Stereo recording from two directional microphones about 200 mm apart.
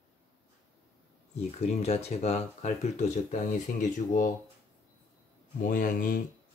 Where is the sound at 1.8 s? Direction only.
30° left (ahead or behind).